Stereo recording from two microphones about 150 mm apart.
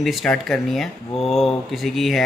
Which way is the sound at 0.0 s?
Centre (ahead or behind).